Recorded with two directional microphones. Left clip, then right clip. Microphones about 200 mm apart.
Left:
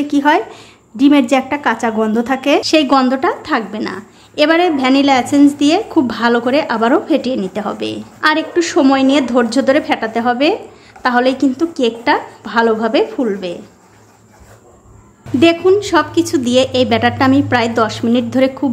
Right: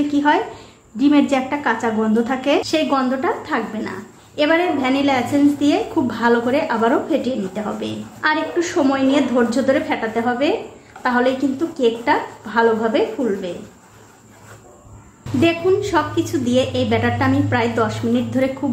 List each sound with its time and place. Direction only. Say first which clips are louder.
0.1 s a woman's voice: left 7 dB; 40° left (ahead or behind)
15.4 s a woman's voice: left 6 dB; 40° left (ahead or behind)